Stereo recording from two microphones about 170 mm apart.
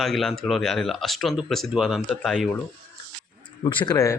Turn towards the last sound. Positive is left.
turn(degrees=20)  # may be behind; listen again after turning